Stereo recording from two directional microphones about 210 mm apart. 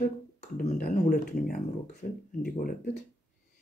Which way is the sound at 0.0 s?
35° left (ahead or behind).